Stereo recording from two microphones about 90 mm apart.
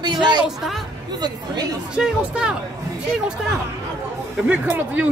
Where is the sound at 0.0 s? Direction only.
55° right (ahead or behind).